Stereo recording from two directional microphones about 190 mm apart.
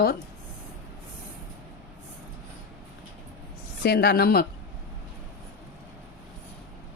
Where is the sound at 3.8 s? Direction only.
55° left (ahead or behind).